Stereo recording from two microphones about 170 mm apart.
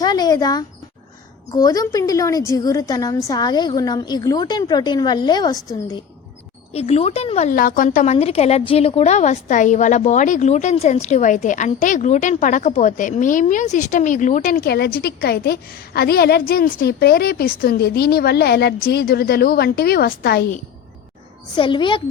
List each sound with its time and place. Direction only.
0.0 s a sound: 25° left (ahead or behind)
1.5 s a woman's voice: 20° left (ahead or behind)
6.7 s a woman's voice: 35° left (ahead or behind)
14.6 s a woman's voice: 70° left (ahead or behind)
21.5 s a woman's voice: 30° left (ahead or behind)